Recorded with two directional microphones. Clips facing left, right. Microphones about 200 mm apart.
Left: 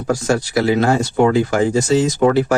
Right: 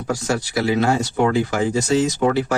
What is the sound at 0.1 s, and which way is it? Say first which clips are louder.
A man's voice: left 5 dB; 50° left (ahead or behind).